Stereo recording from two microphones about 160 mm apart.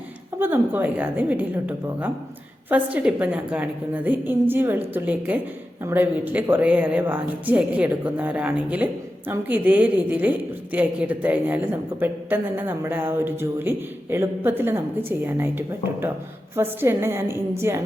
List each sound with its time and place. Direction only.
0.3 s a woman's voice: 15° right (ahead or behind)